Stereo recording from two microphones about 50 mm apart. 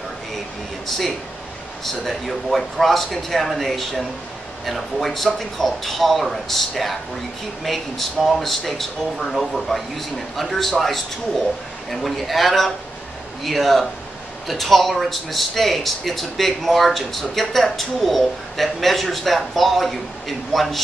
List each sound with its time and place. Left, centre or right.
0.8 s speech: centre